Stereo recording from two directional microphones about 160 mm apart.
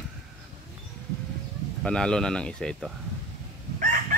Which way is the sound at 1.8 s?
5° left (ahead or behind).